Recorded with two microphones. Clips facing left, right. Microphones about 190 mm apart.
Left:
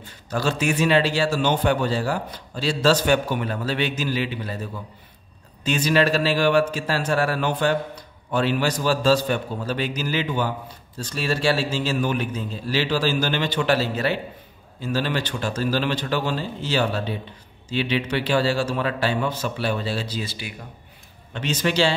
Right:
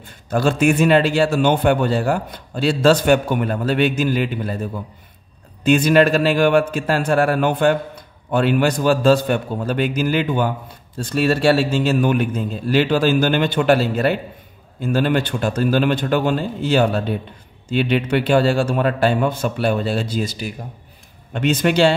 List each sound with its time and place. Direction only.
0.0 s a man's voice: 55° right (ahead or behind)